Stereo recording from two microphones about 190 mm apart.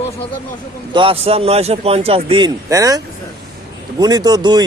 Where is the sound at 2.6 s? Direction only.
20° right (ahead or behind).